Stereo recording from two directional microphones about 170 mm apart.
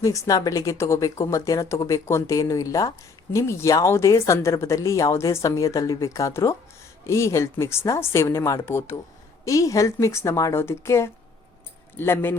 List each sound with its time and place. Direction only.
0.0 s speech: 20° left (ahead or behind)